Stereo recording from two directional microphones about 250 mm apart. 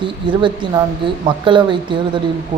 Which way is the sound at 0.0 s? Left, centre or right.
Centre.